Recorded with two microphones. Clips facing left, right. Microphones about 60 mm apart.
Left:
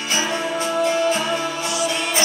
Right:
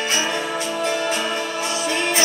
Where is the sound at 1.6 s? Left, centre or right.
Right.